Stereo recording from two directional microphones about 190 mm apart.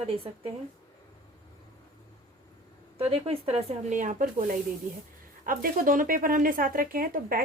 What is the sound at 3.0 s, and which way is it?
A woman's voice, 30° right (ahead or behind).